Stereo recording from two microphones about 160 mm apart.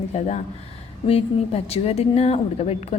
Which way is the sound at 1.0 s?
40° left (ahead or behind).